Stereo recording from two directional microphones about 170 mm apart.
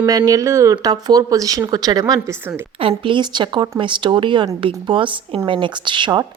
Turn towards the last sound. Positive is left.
turn(degrees=-30)  # may be behind; listen again after turning